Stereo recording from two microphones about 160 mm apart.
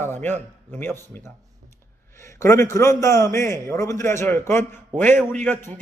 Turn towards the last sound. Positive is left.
turn(degrees=10)  # may be behind; listen again after turning